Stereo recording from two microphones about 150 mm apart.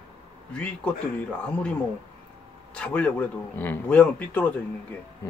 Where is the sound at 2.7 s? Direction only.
10° left (ahead or behind).